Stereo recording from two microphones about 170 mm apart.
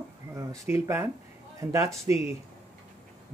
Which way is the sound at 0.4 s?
20° right (ahead or behind).